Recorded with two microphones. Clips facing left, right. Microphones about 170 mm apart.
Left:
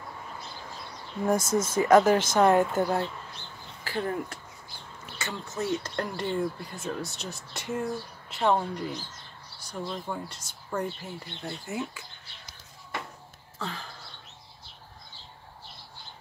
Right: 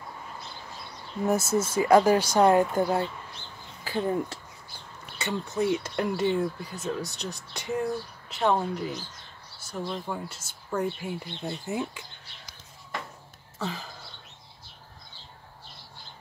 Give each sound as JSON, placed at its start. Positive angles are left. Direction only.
{"t": 1.2, "sound": "speech", "side_deg": -5}
{"t": 5.6, "sound": "speech", "side_deg": -10}
{"t": 13.6, "sound": "a sound", "side_deg": -10}